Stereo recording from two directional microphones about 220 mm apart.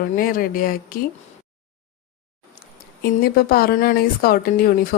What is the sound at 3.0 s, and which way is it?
A woman's voice, 45° left (ahead or behind).